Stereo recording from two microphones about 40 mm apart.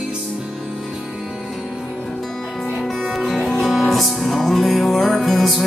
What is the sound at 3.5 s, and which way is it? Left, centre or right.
Music, centre.